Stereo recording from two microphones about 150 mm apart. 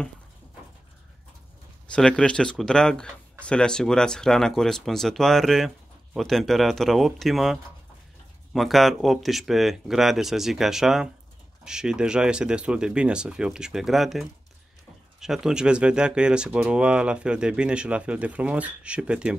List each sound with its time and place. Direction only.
1.9 s speech: 5° left (ahead or behind)
8.5 s speech: centre (ahead or behind)